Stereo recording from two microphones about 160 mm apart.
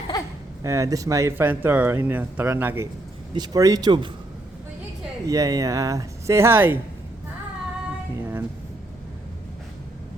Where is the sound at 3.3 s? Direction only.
25° right (ahead or behind).